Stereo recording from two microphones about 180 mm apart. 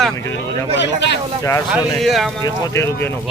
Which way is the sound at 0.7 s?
80° left.